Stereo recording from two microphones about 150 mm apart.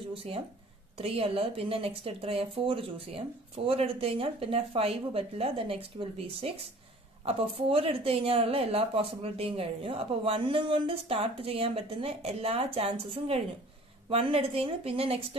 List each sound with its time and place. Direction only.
0.1 s speech: 40° right (ahead or behind)
14.0 s speech: 40° right (ahead or behind)